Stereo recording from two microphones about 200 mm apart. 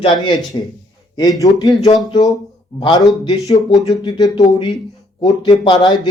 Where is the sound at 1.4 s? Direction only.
20° left (ahead or behind).